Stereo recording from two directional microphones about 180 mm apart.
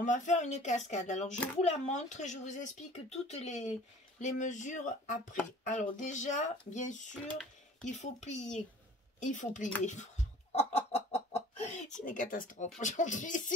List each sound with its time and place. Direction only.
0.0 s speech: 45° left (ahead or behind)
10.5 s chicken: 35° left (ahead or behind)
12.0 s speech: 45° left (ahead or behind)